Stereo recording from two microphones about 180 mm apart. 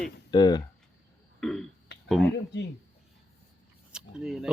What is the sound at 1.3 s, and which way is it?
Burping, 5° left (ahead or behind).